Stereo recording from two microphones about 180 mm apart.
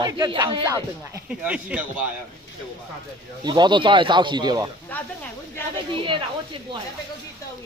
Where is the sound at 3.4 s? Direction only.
25° right (ahead or behind).